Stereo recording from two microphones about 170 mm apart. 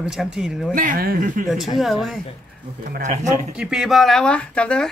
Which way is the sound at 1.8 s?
Centre (ahead or behind).